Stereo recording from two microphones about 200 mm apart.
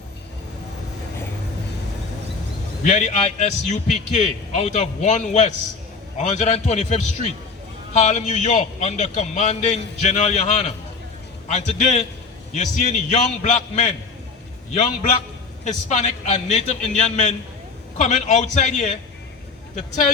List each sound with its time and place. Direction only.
2.8 s a man's voice: 35° left (ahead or behind)
15.6 s a man's voice: 35° left (ahead or behind)